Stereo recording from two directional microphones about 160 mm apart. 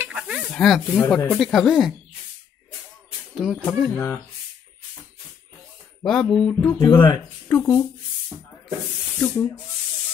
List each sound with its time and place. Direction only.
0.0 s a sound: 5° right (ahead or behind)
0.5 s speech: centre (ahead or behind)
3.3 s speech: centre (ahead or behind)
3.9 s speech: 10° left (ahead or behind)
6.0 s speech: 5° left (ahead or behind)
6.7 s speech: 25° left (ahead or behind)
7.4 s speech: 15° left (ahead or behind)
9.2 s speech: 15° left (ahead or behind)